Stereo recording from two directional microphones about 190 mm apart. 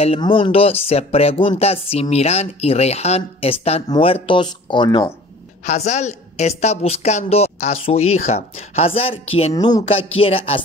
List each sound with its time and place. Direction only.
0.0 s speech: 30° left (ahead or behind)
5.7 s speech: 35° left (ahead or behind)
9.7 s a sound: 30° left (ahead or behind)